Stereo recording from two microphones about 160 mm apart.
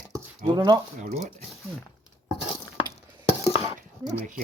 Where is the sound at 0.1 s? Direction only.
25° right (ahead or behind).